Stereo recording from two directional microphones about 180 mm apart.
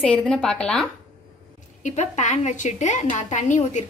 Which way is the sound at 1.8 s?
40° left (ahead or behind).